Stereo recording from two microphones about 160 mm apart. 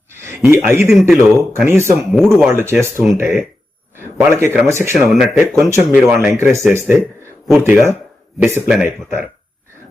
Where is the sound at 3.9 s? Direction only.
15° right (ahead or behind).